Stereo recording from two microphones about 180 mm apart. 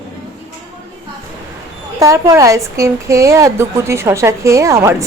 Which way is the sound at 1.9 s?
15° right (ahead or behind).